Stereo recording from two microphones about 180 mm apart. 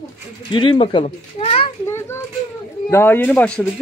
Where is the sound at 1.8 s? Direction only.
15° left (ahead or behind).